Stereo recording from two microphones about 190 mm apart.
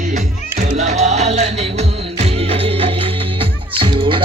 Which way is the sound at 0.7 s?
40° right (ahead or behind).